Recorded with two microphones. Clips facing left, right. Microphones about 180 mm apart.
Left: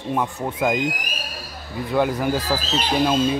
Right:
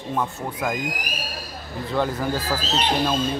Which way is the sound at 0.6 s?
25° left (ahead or behind).